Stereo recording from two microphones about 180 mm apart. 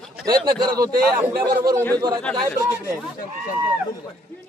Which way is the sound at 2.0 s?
20° right (ahead or behind).